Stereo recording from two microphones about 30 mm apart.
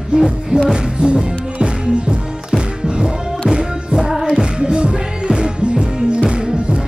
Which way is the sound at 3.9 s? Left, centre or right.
Right.